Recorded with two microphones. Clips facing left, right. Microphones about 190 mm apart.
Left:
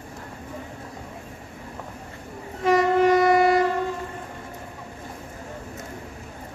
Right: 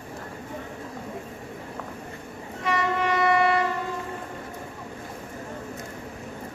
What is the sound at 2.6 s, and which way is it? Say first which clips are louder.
Train: left 8 dB; 40° left (ahead or behind).